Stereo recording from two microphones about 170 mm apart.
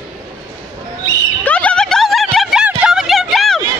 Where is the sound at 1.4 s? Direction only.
10° left (ahead or behind).